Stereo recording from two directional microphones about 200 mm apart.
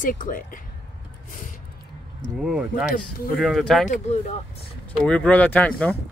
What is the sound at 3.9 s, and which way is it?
Speech, 35° left (ahead or behind).